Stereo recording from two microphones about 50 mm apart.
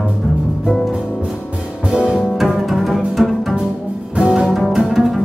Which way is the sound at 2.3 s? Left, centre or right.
Centre.